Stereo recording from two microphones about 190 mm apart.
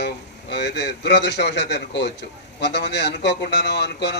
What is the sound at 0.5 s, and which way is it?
A man's voice, 60° left (ahead or behind).